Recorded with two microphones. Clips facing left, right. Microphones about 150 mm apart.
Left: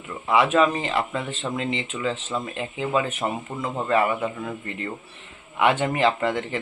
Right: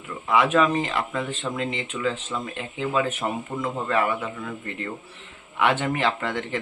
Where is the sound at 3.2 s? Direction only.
15° left (ahead or behind).